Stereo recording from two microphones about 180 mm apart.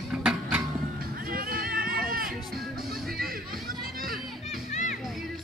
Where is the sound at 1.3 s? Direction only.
55° right (ahead or behind).